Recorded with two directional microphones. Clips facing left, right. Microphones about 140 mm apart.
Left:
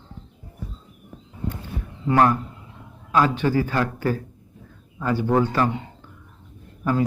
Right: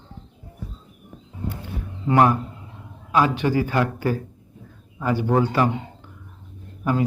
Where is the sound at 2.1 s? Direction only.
15° right (ahead or behind).